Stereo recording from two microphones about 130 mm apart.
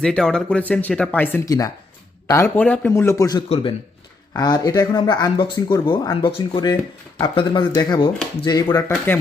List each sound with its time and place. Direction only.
0.0 s speech: 5° left (ahead or behind)
1.5 s speech: 25° left (ahead or behind)
2.6 s speech: 10° left (ahead or behind)
2.9 s speech: 20° left (ahead or behind)
3.5 s speech: 45° left (ahead or behind)
4.4 s speech: 30° left (ahead or behind)